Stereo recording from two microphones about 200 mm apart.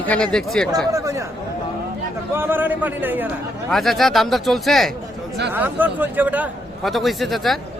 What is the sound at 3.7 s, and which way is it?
A man's voice, centre (ahead or behind).